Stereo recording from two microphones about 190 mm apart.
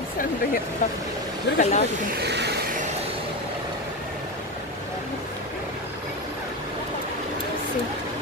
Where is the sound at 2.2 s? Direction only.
60° right (ahead or behind).